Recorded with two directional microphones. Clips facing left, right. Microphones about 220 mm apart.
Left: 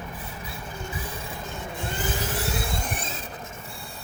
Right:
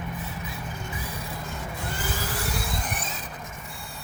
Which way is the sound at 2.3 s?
25° left (ahead or behind).